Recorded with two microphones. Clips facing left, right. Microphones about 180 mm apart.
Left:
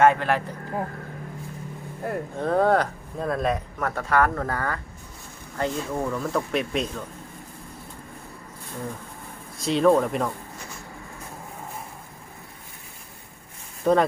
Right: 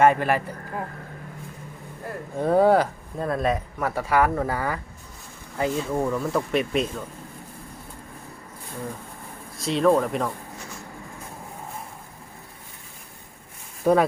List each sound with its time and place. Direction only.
0.0 s speech: 10° right (ahead or behind)
2.0 s speech: 60° left (ahead or behind)
2.4 s speech: 10° right (ahead or behind)
9.6 s speech: centre (ahead or behind)
13.9 s speech: 10° right (ahead or behind)